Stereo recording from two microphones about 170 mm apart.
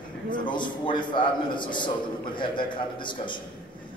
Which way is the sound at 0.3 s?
25° left (ahead or behind).